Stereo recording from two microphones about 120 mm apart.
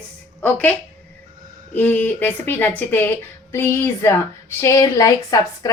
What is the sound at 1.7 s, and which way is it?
Speech, 15° left (ahead or behind).